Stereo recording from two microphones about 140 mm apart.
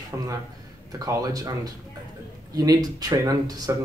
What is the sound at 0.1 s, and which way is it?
Speech, 20° right (ahead or behind).